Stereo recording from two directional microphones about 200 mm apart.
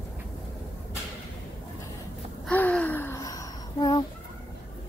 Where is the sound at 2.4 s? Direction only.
5° left (ahead or behind).